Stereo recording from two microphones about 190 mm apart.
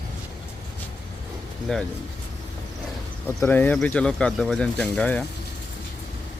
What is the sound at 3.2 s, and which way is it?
Speech, 10° left (ahead or behind).